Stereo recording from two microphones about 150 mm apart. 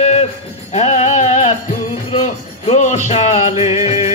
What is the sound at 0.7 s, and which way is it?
Music, 50° left (ahead or behind).